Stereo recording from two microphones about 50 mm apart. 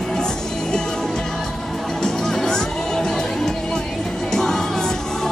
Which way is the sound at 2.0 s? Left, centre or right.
Centre.